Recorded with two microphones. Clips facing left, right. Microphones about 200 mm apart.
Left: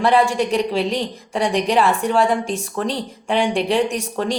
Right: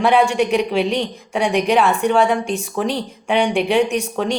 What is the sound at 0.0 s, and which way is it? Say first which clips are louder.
Speech: right 1 dB; centre (ahead or behind).